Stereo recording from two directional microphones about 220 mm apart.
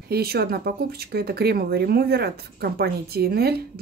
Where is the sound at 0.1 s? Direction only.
45° right (ahead or behind).